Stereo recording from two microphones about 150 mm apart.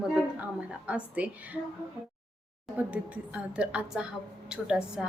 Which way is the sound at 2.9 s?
10° right (ahead or behind).